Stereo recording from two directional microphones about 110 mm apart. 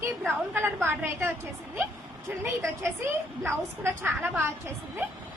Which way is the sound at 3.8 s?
20° right (ahead or behind).